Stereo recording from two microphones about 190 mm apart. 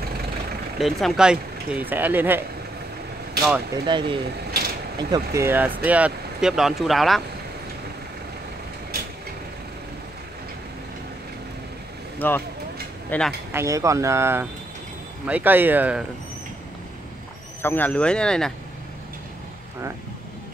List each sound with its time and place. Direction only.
0.7 s speech: centre (ahead or behind)
3.7 s speech: 25° right (ahead or behind); by 7.2 s centre (ahead or behind)
12.2 s speech: 10° left (ahead or behind)
13.5 s speech: 15° right (ahead or behind)
17.6 s speech: 10° left (ahead or behind)